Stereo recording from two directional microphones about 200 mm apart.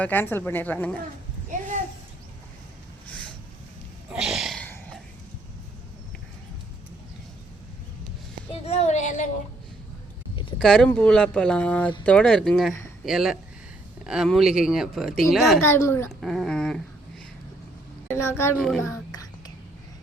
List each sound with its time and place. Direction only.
0.0 s a woman's voice: 10° left (ahead or behind)
1.5 s a sound: 40° right (ahead or behind)
4.1 s a sound: 5° right (ahead or behind)
8.6 s speech: 35° left (ahead or behind)
10.6 s speech: 5° left (ahead or behind)
15.6 s a woman's voice: 10° left (ahead or behind)
16.2 s speech: centre (ahead or behind)
18.1 s a woman's voice: 10° left (ahead or behind)
18.5 s speech: centre (ahead or behind)